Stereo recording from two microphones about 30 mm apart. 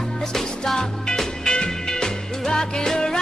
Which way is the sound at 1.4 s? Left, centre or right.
Left.